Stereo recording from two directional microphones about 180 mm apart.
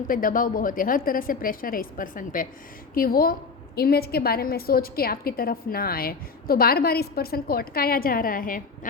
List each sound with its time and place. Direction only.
0.1 s a woman's voice: 50° left (ahead or behind)